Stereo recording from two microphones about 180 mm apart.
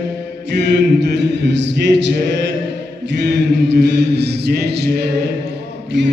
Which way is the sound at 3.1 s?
75° right (ahead or behind).